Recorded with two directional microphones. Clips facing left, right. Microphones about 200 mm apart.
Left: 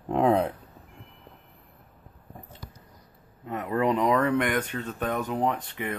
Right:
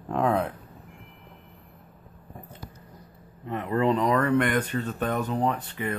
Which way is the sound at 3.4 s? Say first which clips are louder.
Right 1 dB; 10° left (ahead or behind).